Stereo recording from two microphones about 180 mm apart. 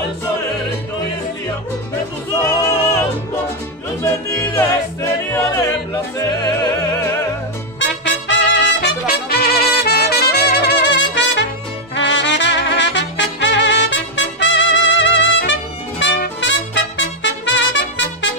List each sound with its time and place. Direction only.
2.3 s music: 20° left (ahead or behind)
4.6 s music: 20° left (ahead or behind)
7.8 s trumpet: 90° left
11.9 s music: 90° left